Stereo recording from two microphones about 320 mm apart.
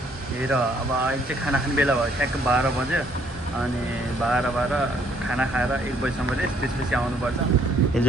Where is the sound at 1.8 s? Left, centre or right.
Centre.